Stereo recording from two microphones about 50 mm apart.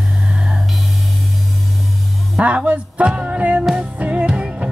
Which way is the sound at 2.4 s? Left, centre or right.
Right.